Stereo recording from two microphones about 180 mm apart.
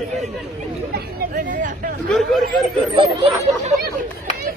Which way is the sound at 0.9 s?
50° right (ahead or behind).